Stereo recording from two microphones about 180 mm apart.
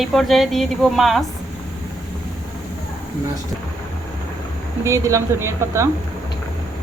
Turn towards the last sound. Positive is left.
turn(degrees=-15)  # may be behind; listen again after turning